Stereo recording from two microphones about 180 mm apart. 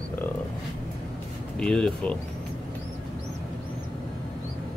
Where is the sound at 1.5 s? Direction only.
5° left (ahead or behind).